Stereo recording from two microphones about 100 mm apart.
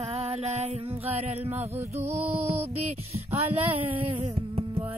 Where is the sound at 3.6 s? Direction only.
65° right (ahead or behind).